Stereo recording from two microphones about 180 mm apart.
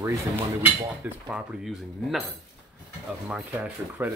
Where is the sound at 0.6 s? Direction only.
5° right (ahead or behind).